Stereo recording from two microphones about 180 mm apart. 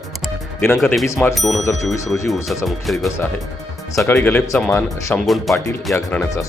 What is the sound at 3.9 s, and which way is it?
Speech, 15° left (ahead or behind).